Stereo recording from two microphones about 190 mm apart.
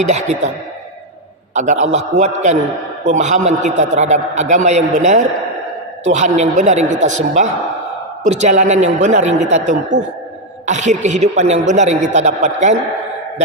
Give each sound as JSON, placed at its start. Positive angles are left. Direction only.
{"t": 0.0, "sound": "a man's voice", "side_deg": -35}
{"t": 1.5, "sound": "a man's voice", "side_deg": -40}